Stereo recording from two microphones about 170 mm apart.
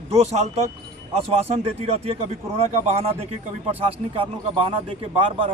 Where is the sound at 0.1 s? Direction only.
40° right (ahead or behind).